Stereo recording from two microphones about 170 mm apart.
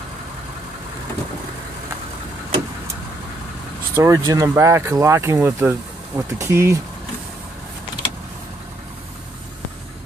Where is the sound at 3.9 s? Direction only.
20° right (ahead or behind).